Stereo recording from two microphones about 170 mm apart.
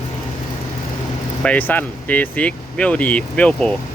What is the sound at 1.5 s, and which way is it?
Speech, 10° left (ahead or behind).